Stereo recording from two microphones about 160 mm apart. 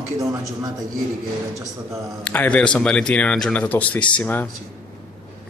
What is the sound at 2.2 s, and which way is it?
Speech, 10° left (ahead or behind).